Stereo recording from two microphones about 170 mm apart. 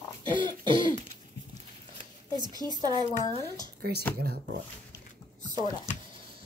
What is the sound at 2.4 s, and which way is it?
Speech, 25° right (ahead or behind).